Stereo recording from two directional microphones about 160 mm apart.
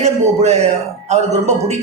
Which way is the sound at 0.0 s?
40° right (ahead or behind).